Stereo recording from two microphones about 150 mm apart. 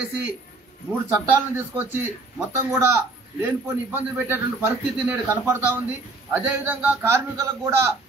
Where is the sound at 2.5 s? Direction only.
20° right (ahead or behind).